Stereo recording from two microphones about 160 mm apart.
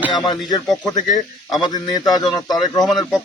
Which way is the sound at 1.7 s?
25° left (ahead or behind).